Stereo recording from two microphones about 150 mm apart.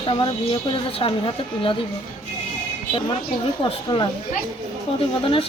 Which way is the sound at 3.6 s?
30° left (ahead or behind).